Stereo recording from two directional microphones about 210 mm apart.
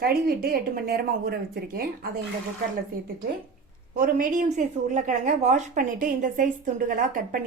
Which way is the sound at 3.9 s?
40° right (ahead or behind).